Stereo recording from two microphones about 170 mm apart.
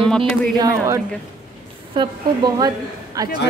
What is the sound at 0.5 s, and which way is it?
A woman's voice, 15° right (ahead or behind).